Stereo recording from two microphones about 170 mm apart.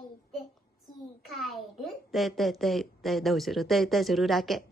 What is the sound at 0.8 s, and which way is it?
A child's voice, centre (ahead or behind).